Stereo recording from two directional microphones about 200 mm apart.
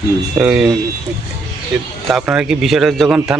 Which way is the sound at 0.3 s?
5° right (ahead or behind).